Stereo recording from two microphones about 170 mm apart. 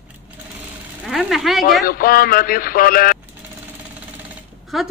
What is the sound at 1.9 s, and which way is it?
Speech, 60° left (ahead or behind).